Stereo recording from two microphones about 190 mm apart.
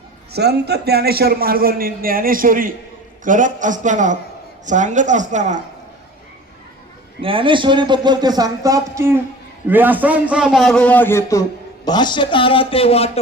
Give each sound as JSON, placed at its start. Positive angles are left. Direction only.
{"t": 0.3, "sound": "a man's voice", "side_deg": -60}
{"t": 7.2, "sound": "a man's voice", "side_deg": -30}